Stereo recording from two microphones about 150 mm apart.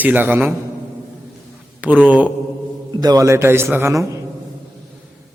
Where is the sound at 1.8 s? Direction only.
10° right (ahead or behind).